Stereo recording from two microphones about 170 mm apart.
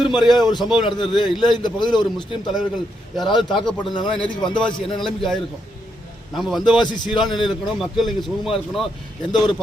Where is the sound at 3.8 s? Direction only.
25° left (ahead or behind).